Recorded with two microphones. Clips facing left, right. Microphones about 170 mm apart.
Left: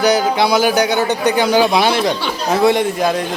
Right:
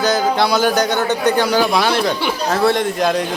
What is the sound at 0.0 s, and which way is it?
A man's voice, 10° left (ahead or behind).